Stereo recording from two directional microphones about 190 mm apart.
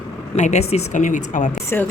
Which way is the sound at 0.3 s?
35° left (ahead or behind).